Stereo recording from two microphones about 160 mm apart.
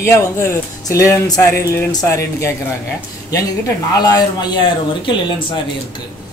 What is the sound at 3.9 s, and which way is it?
Speech, 25° left (ahead or behind).